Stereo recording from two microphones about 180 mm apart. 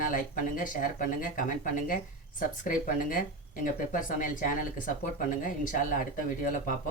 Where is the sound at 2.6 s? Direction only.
50° left (ahead or behind).